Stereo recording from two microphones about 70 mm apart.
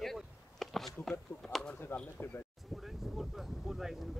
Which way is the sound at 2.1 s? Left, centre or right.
Left.